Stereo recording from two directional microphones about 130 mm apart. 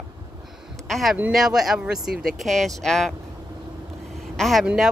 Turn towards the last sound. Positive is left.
turn(degrees=-5)  # may be behind; listen again after turning